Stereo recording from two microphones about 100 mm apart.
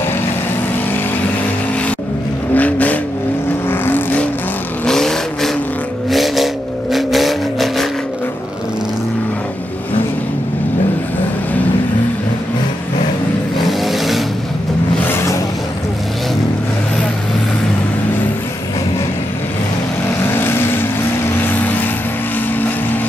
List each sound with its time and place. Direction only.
2.5 s vehicle: 15° left (ahead or behind)
4.8 s vehicle: 5° left (ahead or behind)
13.7 s vehicle: centre (ahead or behind)
20.3 s vehicle: 20° left (ahead or behind)